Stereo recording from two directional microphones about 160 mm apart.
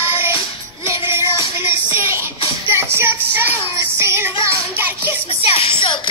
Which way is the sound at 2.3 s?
35° left (ahead or behind).